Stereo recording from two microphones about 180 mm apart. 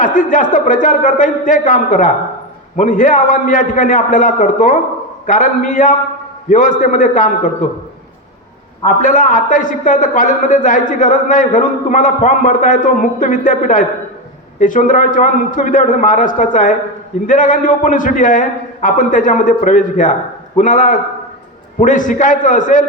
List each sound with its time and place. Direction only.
0.0 s speech: 45° left (ahead or behind)
9.0 s speech: 45° left (ahead or behind)